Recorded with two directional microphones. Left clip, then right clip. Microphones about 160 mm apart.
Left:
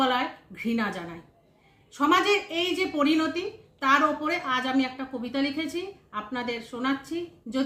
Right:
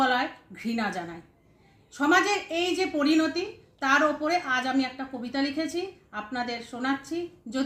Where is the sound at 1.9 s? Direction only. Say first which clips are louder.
Left 1 dB; 20° left (ahead or behind).